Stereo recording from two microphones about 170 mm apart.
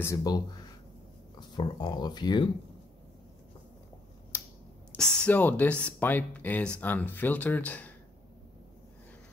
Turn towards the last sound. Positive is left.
turn(degrees=10)  # may be behind; listen again after turning